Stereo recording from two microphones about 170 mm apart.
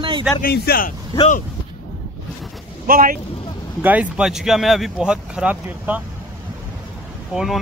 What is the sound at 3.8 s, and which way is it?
Speech, 10° right (ahead or behind).